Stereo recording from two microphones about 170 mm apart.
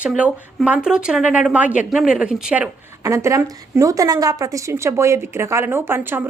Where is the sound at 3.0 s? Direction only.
20° right (ahead or behind).